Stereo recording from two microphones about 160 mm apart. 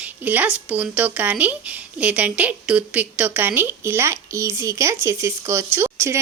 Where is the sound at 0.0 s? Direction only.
10° right (ahead or behind).